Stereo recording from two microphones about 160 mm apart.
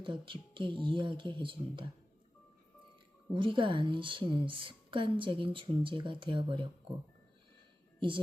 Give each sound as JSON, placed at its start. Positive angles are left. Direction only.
{"t": 0.0, "sound": "a woman's voice", "side_deg": -30}
{"t": 3.3, "sound": "a woman's voice", "side_deg": -30}
{"t": 7.9, "sound": "speech", "side_deg": -30}